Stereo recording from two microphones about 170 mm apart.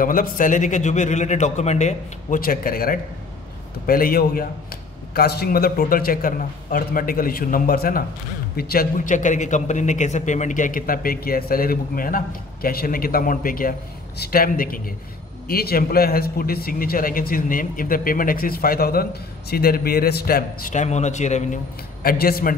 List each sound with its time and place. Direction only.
0.0 s a man's voice: 55° left (ahead or behind)
20.7 s a man's voice: 45° left (ahead or behind)
22.0 s speech: 60° left (ahead or behind)